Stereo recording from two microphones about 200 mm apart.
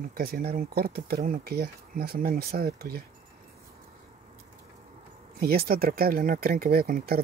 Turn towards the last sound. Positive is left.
turn(degrees=-45)  # may be behind; listen again after turning